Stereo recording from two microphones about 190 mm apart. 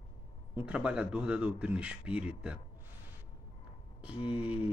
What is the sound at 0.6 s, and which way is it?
Speech, 5° right (ahead or behind).